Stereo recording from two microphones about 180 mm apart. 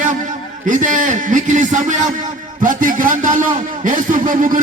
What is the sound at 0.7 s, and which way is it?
A man's voice, 45° right (ahead or behind).